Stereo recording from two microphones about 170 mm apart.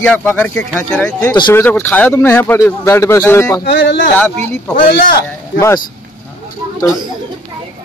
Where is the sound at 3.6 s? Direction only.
85° left.